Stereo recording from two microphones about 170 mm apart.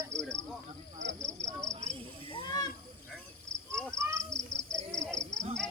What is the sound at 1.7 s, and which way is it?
Cricket, 40° right (ahead or behind).